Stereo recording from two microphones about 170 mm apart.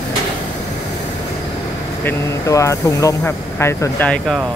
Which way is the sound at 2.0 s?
15° left (ahead or behind).